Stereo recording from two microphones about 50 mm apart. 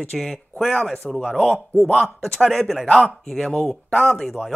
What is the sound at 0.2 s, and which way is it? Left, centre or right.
Speech, centre.